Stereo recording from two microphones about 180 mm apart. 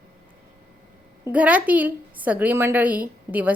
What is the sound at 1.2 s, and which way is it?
A woman's voice, 10° right (ahead or behind).